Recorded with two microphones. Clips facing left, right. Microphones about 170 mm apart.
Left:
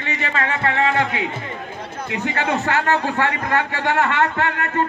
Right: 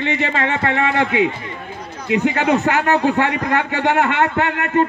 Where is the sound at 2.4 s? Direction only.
15° right (ahead or behind).